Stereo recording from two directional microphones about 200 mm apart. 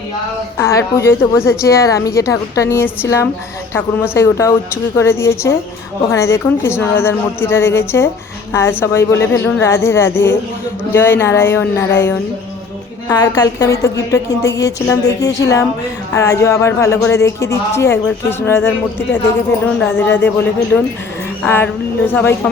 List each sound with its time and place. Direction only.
0.6 s speech: 15° left (ahead or behind)